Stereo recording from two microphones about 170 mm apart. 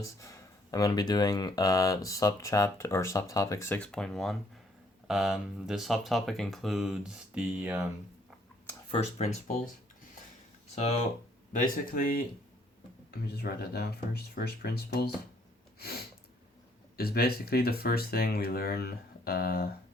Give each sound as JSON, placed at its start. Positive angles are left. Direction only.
{"t": 0.0, "sound": "speech", "side_deg": 20}
{"t": 3.8, "sound": "speech", "side_deg": 5}
{"t": 8.9, "sound": "speech", "side_deg": 40}
{"t": 11.5, "sound": "speech", "side_deg": 50}
{"t": 17.0, "sound": "speech", "side_deg": 65}